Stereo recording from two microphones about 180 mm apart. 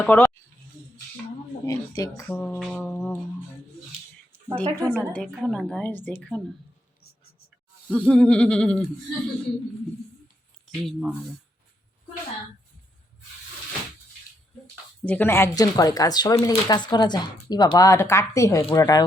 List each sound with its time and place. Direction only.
0.0 s a woman's voice: 10° left (ahead or behind)
1.6 s speech: 20° left (ahead or behind)
2.3 s a woman's voice: 5° left (ahead or behind)
4.5 s a woman's voice: 5° left (ahead or behind)
7.9 s speech: 5° left (ahead or behind)
10.8 s speech: 5° right (ahead or behind)
15.0 s speech: 10° left (ahead or behind)